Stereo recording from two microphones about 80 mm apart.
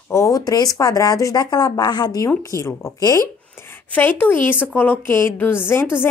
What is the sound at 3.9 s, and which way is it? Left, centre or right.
A woman's voice, left.